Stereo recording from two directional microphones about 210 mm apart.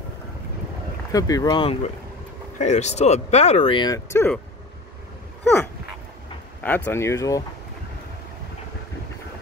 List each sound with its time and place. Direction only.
1.1 s speech: 15° left (ahead or behind)
6.6 s speech: 10° left (ahead or behind)